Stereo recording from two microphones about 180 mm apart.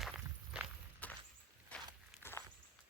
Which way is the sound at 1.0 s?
10° left (ahead or behind).